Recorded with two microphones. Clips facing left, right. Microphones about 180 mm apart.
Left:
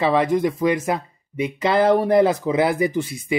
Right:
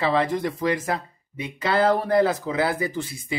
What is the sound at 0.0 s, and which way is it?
Speech, 15° left (ahead or behind).